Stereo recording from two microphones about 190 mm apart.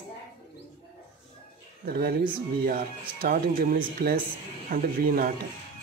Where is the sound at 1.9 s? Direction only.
55° right (ahead or behind).